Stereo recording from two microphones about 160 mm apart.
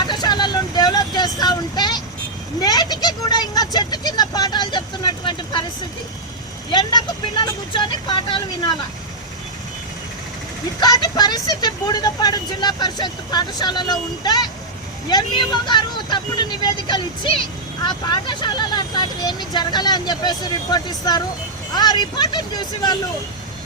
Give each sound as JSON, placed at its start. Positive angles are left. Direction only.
{"t": 0.1, "sound": "vehicle", "side_deg": 25}
{"t": 6.7, "sound": "speech", "side_deg": 30}
{"t": 10.8, "sound": "speech", "side_deg": 25}